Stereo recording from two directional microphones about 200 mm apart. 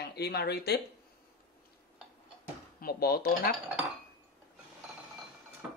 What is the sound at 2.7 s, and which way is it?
Speech, 50° left (ahead or behind).